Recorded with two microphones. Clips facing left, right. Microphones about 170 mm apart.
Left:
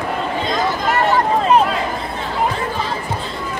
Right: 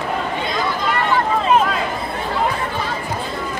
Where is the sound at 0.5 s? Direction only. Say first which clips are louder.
Left 4 dB; 45° left (ahead or behind).